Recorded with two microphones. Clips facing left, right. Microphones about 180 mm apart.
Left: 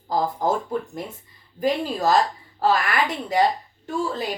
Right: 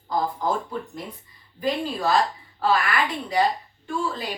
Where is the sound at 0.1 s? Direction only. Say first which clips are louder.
Left 2 dB; 40° left (ahead or behind).